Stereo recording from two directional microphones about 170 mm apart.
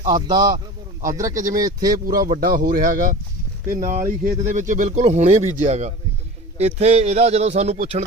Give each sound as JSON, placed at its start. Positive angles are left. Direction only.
{"t": 0.1, "sound": "speech", "side_deg": -25}
{"t": 1.2, "sound": "speech", "side_deg": -50}